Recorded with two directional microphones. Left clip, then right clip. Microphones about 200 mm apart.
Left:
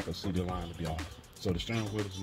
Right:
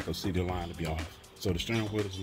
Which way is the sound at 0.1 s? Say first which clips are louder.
Right 6 dB; 50° right (ahead or behind).